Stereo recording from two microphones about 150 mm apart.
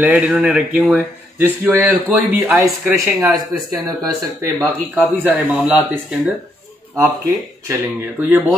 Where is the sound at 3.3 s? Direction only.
25° right (ahead or behind).